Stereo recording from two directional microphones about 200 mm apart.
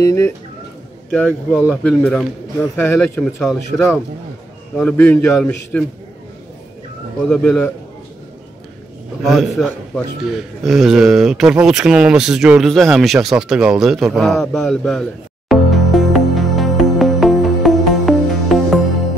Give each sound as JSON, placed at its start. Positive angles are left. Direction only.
{"t": 0.0, "sound": "a man's voice", "side_deg": 15}
{"t": 1.5, "sound": "a man's voice", "side_deg": -5}
{"t": 1.8, "sound": "a man's voice", "side_deg": 5}
{"t": 3.4, "sound": "a man's voice", "side_deg": 0}
{"t": 7.2, "sound": "a man's voice", "side_deg": 5}
{"t": 9.2, "sound": "a man's voice", "side_deg": 0}
{"t": 10.6, "sound": "a sound", "side_deg": 0}